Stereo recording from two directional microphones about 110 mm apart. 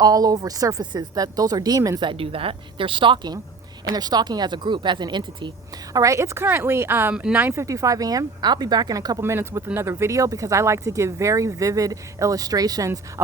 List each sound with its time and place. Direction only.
0.0 s speech: 35° right (ahead or behind)
2.0 s speech: 55° right (ahead or behind)
5.9 s speech: 30° right (ahead or behind)
9.2 s speech: 25° right (ahead or behind)